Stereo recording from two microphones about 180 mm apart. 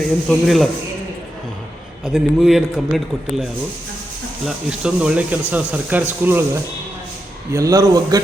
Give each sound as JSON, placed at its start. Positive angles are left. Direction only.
{"t": 0.3, "sound": "a man's voice", "side_deg": 0}
{"t": 2.0, "sound": "a man's voice", "side_deg": 0}
{"t": 4.4, "sound": "speech", "side_deg": -5}